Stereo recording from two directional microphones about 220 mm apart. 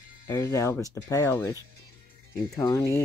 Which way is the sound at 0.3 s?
15° left (ahead or behind).